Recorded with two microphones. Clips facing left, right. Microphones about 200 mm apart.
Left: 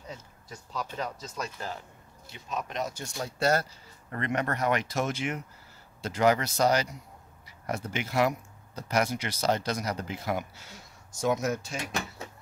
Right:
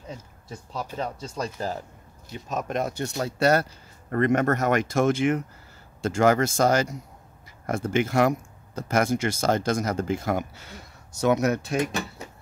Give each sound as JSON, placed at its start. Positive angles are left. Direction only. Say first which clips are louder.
{"t": 0.9, "sound": "speech", "louder": "right 4 dB", "side_deg": -30}
{"t": 4.1, "sound": "speech", "louder": "right 9 dB", "side_deg": -50}